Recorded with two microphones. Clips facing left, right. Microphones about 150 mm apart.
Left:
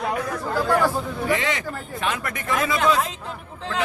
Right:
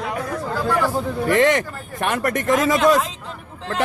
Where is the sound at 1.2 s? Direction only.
55° right (ahead or behind).